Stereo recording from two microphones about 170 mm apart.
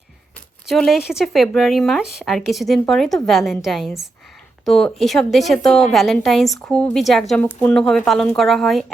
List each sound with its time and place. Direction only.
0.7 s a woman's voice: centre (ahead or behind)